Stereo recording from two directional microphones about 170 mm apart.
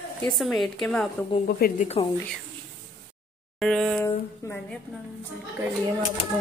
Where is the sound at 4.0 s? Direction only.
15° left (ahead or behind).